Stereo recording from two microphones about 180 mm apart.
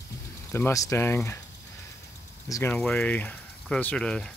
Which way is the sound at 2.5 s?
10° left (ahead or behind).